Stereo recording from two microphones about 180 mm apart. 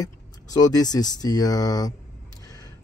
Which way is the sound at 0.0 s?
20° left (ahead or behind).